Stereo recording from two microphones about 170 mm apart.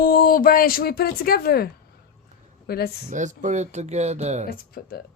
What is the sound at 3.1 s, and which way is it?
Speech, 45° right (ahead or behind).